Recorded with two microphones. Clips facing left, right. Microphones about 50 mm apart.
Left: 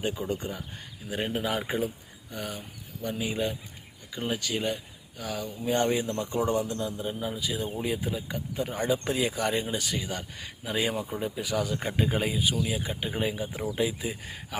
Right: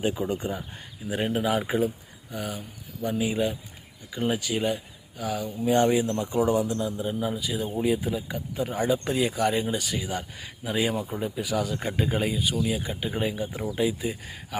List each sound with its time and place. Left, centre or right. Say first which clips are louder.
0.0 s speech: right 4 dB; centre
1.0 s speech: right 4 dB; centre